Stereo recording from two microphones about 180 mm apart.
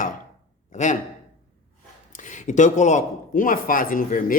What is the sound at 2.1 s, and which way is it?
Speech, 45° left (ahead or behind).